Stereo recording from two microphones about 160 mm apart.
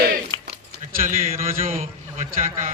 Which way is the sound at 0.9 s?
60° right (ahead or behind).